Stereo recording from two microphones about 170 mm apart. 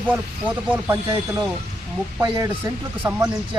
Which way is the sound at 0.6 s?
10° right (ahead or behind).